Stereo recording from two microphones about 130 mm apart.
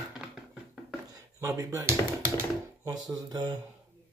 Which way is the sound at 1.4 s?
25° right (ahead or behind).